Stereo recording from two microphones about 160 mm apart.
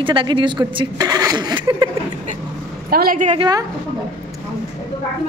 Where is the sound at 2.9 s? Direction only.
65° right (ahead or behind).